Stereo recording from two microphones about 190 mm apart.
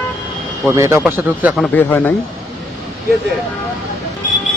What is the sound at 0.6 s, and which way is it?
Speech, 15° right (ahead or behind).